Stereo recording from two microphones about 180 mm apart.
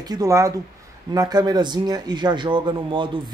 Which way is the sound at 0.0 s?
20° right (ahead or behind).